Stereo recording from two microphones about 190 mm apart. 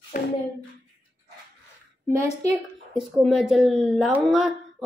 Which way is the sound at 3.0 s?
Centre (ahead or behind).